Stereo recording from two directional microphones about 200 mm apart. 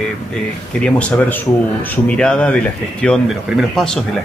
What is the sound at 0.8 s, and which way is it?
Speech, 5° left (ahead or behind).